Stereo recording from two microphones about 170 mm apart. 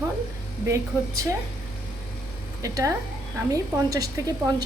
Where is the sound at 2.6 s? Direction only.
20° right (ahead or behind).